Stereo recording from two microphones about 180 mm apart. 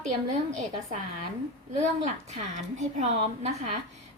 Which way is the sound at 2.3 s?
40° right (ahead or behind).